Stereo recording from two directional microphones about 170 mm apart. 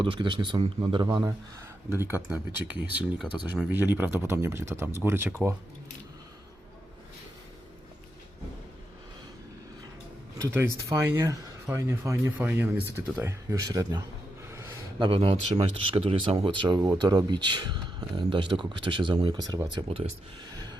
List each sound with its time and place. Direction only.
0.0 s speech: 30° right (ahead or behind); by 5.5 s 10° right (ahead or behind)
10.3 s speech: 15° right (ahead or behind)
14.4 s a sound: 15° right (ahead or behind)
14.9 s speech: 30° right (ahead or behind)